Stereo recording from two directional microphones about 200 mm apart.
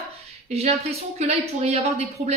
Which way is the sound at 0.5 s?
30° right (ahead or behind).